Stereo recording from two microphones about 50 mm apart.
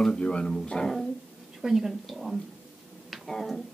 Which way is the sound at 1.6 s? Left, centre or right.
Centre.